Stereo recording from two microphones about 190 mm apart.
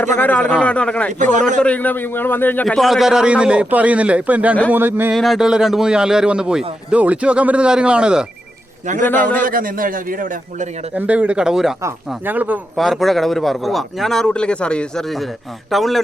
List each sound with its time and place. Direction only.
0.2 s speech: 10° left (ahead or behind)
1.2 s a man's voice: 40° right (ahead or behind)
1.6 s speech: 10° left (ahead or behind); by 5.1 s 10° right (ahead or behind)
5.1 s speech: centre (ahead or behind)
9.4 s a man's voice: 50° right (ahead or behind)
10.9 s speech: 10° right (ahead or behind)